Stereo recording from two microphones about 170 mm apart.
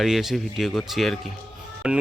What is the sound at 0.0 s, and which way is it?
Speech, centre (ahead or behind).